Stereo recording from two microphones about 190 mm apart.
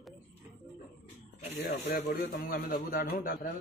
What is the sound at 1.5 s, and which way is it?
A man's voice, 55° left (ahead or behind).